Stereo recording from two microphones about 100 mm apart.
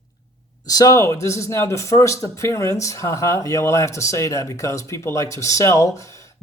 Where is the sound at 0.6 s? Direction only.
35° left (ahead or behind).